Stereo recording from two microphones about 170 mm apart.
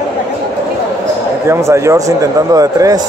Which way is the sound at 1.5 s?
15° right (ahead or behind).